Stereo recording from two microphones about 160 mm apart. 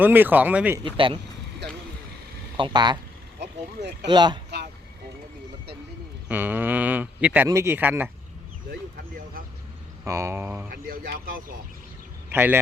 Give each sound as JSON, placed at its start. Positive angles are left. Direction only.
{"t": 0.0, "sound": "speech", "side_deg": -10}
{"t": 0.9, "sound": "speech", "side_deg": -35}
{"t": 2.6, "sound": "speech", "side_deg": -30}
{"t": 3.4, "sound": "speech", "side_deg": -90}
{"t": 4.1, "sound": "speech", "side_deg": -30}
{"t": 6.2, "sound": "speech", "side_deg": -10}
{"t": 10.0, "sound": "speech", "side_deg": -20}
{"t": 10.7, "sound": "speech", "side_deg": -65}
{"t": 12.3, "sound": "a man's voice", "side_deg": -10}